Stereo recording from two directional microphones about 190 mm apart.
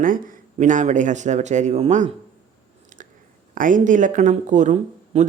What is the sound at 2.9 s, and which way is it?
Chewing, 45° right (ahead or behind).